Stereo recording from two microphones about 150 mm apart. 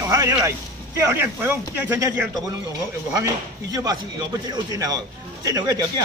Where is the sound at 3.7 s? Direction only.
25° right (ahead or behind).